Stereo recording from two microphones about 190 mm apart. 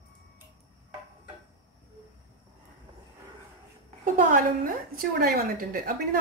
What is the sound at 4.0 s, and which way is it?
A woman's voice, 45° right (ahead or behind).